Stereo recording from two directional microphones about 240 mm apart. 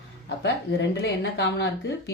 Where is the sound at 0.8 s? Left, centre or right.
Left.